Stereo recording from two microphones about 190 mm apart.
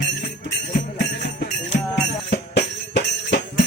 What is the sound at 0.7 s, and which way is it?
Music, 60° left (ahead or behind).